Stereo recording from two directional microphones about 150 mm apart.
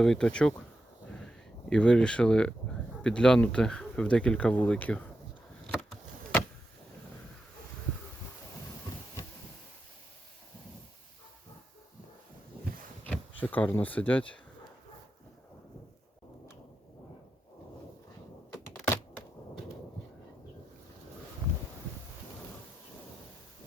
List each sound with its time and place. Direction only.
0.0 s speech: 5° left (ahead or behind)
1.0 s crow: 5° left (ahead or behind)
1.7 s speech: 5° left (ahead or behind)
13.4 s speech: 10° left (ahead or behind)
18.5 s computer keyboard: 20° left (ahead or behind)